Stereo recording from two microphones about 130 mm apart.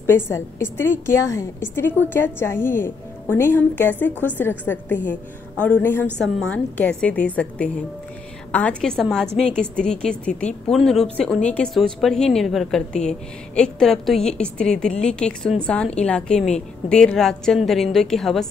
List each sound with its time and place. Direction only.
0.0 s a woman's voice: 20° left (ahead or behind); by 18.5 s centre (ahead or behind)